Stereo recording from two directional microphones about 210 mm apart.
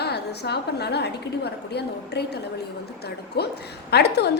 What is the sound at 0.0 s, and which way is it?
A woman's voice, 50° left (ahead or behind).